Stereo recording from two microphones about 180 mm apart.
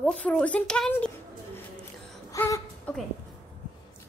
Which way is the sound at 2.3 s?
15° left (ahead or behind).